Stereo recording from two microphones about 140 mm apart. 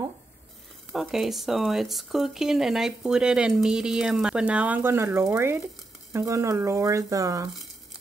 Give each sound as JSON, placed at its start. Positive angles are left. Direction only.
{"t": 0.9, "sound": "speech", "side_deg": 0}